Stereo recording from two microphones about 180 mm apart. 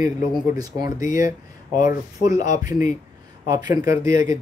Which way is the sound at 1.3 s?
45° left (ahead or behind).